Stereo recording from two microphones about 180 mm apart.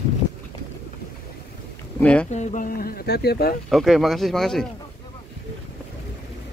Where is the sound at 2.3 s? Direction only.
45° left (ahead or behind); by 3.5 s 60° left (ahead or behind).